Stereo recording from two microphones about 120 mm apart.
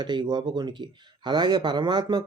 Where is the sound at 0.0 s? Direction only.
40° right (ahead or behind).